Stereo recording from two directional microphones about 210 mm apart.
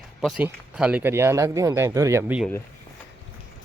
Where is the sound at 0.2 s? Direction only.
Centre (ahead or behind).